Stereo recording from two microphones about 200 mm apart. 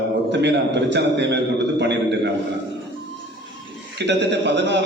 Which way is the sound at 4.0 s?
60° right (ahead or behind).